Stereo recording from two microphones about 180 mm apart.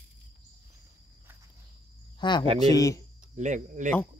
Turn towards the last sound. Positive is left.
turn(degrees=-40)  # may be behind; listen again after turning